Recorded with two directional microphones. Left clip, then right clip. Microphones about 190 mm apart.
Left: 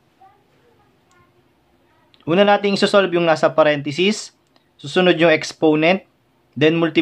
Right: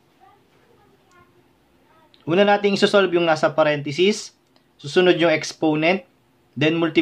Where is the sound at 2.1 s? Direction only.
25° left (ahead or behind).